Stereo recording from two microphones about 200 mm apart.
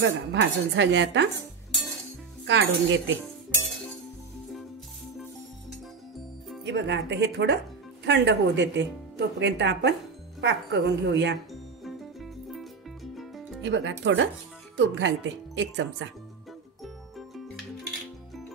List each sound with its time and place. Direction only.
0.0 s speech: 65° right (ahead or behind)
2.4 s speech: 65° right (ahead or behind)
6.6 s speech: 65° right (ahead or behind)
11.8 s music: centre (ahead or behind)
13.6 s speech: 65° right (ahead or behind)